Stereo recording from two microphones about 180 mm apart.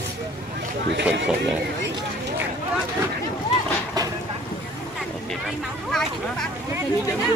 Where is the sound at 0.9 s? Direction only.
70° right (ahead or behind).